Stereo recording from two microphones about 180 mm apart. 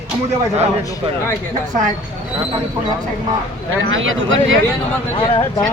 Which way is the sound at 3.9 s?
90° right.